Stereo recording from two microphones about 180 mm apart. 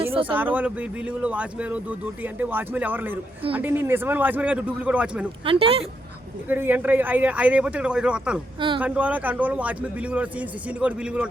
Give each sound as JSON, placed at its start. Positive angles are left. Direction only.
{"t": 0.1, "sound": "a sound", "side_deg": -30}
{"t": 0.3, "sound": "a man's voice", "side_deg": -10}
{"t": 5.5, "sound": "speech", "side_deg": -30}
{"t": 6.5, "sound": "a man's voice", "side_deg": -10}